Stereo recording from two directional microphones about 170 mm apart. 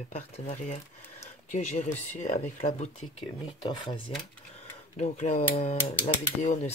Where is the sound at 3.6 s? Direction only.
25° left (ahead or behind).